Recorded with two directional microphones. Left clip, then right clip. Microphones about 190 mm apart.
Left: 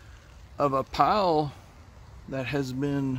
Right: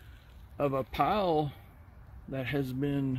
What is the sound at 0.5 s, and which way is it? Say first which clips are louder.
Speech: left 6 dB; centre (ahead or behind).